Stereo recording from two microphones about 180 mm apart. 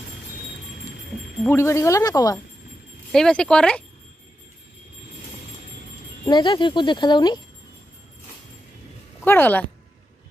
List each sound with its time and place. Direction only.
1.5 s speech: 15° left (ahead or behind)
3.1 s speech: 5° left (ahead or behind)
6.2 s speech: 25° left (ahead or behind)
9.2 s speech: 10° left (ahead or behind)